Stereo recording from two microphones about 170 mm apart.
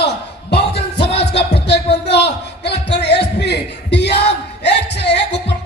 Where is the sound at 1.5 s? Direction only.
75° left (ahead or behind).